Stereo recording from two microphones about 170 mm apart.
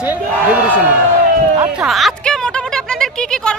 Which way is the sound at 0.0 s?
10° right (ahead or behind).